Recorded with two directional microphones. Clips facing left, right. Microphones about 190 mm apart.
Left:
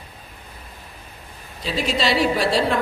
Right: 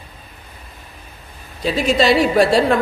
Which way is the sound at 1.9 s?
50° right (ahead or behind).